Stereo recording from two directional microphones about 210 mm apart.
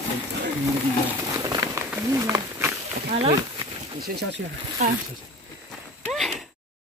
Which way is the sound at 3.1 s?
30° right (ahead or behind).